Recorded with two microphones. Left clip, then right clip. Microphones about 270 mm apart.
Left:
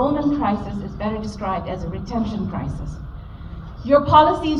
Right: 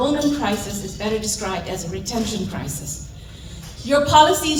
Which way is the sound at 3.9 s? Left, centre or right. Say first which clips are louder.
Even; centre.